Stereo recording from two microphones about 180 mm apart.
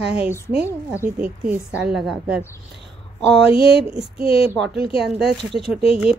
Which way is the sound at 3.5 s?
30° left (ahead or behind).